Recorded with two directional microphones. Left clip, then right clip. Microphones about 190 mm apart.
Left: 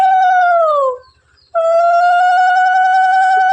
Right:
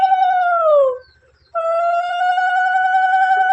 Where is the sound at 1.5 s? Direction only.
40° left (ahead or behind).